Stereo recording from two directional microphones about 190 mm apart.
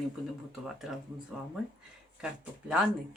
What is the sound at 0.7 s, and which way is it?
Speech, centre (ahead or behind).